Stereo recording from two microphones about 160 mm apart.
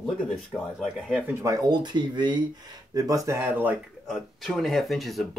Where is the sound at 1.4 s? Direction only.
25° right (ahead or behind).